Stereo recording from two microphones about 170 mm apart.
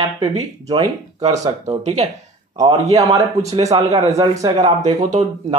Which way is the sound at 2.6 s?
20° right (ahead or behind).